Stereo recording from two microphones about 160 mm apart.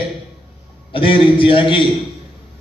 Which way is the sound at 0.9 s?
35° left (ahead or behind).